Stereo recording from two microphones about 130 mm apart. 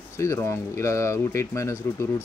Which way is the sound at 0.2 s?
25° left (ahead or behind).